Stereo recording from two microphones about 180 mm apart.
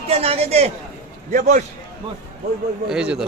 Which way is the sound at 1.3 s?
45° right (ahead or behind).